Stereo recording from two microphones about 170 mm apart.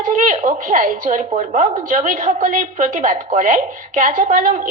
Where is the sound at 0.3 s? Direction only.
50° right (ahead or behind).